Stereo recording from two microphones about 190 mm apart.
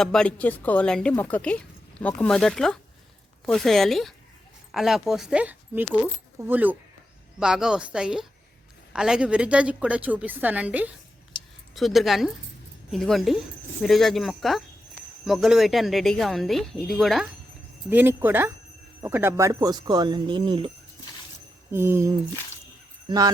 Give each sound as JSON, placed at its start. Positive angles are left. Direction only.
{"t": 0.0, "sound": "a woman's voice", "side_deg": 5}
{"t": 17.8, "sound": "a woman's voice", "side_deg": -10}
{"t": 21.7, "sound": "a woman's voice", "side_deg": -15}